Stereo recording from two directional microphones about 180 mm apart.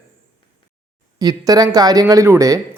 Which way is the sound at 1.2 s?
20° right (ahead or behind).